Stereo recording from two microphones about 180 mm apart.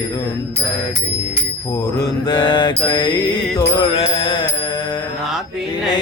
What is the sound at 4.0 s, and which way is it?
Music, 30° left (ahead or behind).